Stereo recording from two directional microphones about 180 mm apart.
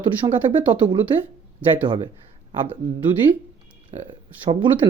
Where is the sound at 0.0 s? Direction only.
30° right (ahead or behind).